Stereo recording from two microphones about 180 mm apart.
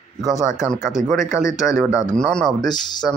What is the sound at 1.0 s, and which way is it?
Speech, centre (ahead or behind).